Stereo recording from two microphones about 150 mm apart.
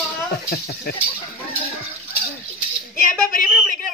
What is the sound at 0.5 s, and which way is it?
Speech, 90° left.